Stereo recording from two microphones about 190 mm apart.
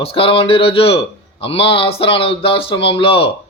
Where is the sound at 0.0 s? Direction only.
30° left (ahead or behind).